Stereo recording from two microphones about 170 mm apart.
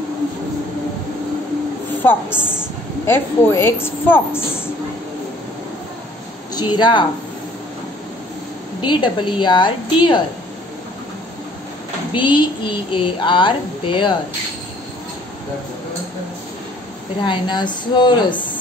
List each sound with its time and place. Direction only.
2.2 s a woman's voice: 5° right (ahead or behind)
3.1 s a woman's voice: 15° left (ahead or behind)
6.5 s a woman's voice: 25° left (ahead or behind)
8.8 s a woman's voice: 25° left (ahead or behind)
12.1 s a woman's voice: 30° left (ahead or behind)
17.2 s a woman's voice: 25° left (ahead or behind)